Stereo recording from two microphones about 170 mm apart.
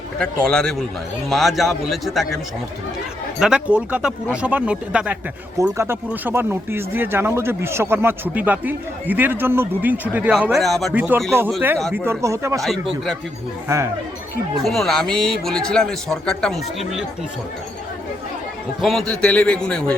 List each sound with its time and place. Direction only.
0.2 s speech: 5° left (ahead or behind)
3.4 s speech: 5° right (ahead or behind)
10.9 s speech: 10° right (ahead or behind)
14.6 s speech: centre (ahead or behind)
18.8 s speech: centre (ahead or behind)